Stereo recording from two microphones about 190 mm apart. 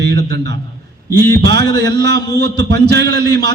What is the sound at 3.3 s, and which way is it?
Speech, 20° left (ahead or behind).